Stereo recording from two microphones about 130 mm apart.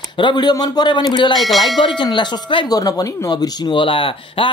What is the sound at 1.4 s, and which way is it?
Church bell, centre (ahead or behind).